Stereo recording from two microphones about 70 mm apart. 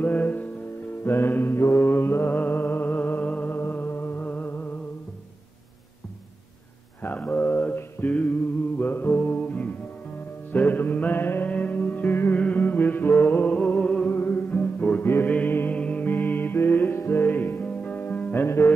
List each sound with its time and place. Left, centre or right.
0.0 s music: left
7.0 s a sound: left
10.5 s music: left
14.0 s music: left